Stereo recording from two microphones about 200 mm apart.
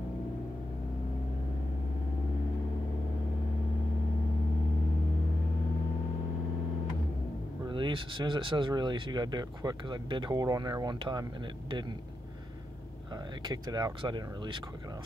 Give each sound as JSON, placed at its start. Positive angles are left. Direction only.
{"t": 7.6, "sound": "speech", "side_deg": -25}
{"t": 13.5, "sound": "speech", "side_deg": -20}